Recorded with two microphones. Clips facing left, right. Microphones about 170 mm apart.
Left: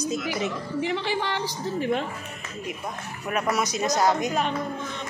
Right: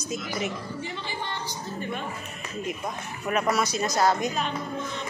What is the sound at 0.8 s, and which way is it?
A woman's voice, 90° left.